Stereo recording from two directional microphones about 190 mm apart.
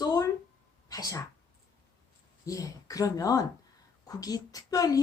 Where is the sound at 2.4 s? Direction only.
15° left (ahead or behind).